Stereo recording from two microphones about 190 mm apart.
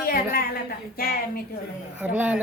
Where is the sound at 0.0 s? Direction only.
50° left (ahead or behind).